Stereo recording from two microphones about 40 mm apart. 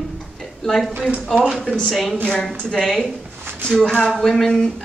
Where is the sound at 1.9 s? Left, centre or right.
Centre.